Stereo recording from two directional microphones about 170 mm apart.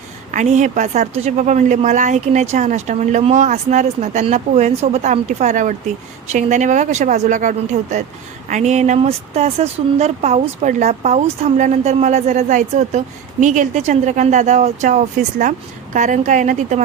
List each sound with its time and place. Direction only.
0.3 s a woman's voice: 45° right (ahead or behind)